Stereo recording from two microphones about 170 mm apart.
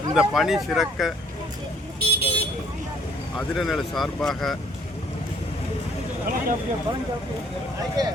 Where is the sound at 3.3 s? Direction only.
Centre (ahead or behind).